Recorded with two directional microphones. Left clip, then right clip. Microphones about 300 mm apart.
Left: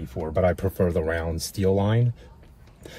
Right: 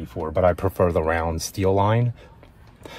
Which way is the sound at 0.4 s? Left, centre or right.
Centre.